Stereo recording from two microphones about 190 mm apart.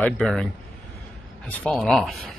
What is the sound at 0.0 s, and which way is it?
Speech, 5° left (ahead or behind).